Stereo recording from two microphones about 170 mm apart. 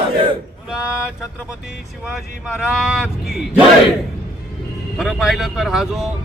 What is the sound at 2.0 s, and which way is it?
Speech, centre (ahead or behind).